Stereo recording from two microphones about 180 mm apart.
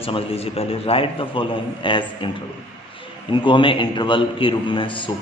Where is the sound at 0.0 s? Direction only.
30° left (ahead or behind).